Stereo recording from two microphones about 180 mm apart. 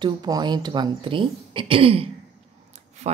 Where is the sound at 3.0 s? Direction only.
35° right (ahead or behind).